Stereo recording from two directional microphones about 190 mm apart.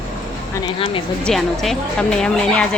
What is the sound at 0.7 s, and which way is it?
Speech, 30° left (ahead or behind).